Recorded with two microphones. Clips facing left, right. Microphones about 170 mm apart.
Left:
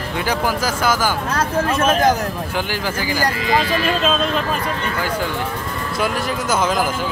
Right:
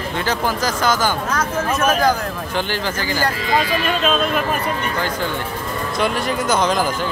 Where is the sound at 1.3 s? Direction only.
30° left (ahead or behind).